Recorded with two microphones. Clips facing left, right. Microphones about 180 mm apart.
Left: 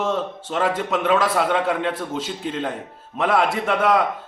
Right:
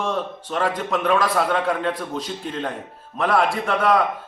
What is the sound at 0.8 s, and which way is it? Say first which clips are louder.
A man's voice: left 1 dB; 5° left (ahead or behind).